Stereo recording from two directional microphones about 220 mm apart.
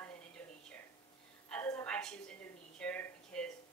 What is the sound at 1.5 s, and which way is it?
A woman's voice, 10° left (ahead or behind).